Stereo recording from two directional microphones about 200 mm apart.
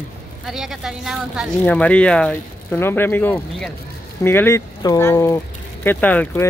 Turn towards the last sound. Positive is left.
turn(degrees=10)  # may be behind; listen again after turning